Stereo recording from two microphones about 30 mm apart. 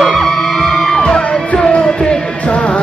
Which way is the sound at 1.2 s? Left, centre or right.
Left.